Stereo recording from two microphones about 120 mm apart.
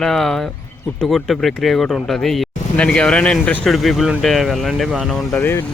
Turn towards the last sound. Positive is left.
turn(degrees=15)  # may be behind; listen again after turning